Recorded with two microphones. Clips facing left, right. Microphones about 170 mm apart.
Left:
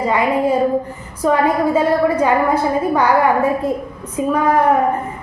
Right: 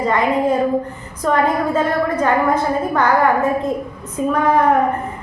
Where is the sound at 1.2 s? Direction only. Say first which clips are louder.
Left 2 dB; 10° left (ahead or behind).